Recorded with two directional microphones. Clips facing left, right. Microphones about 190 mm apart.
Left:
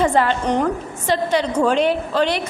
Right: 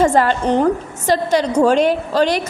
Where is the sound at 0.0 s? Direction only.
40° right (ahead or behind).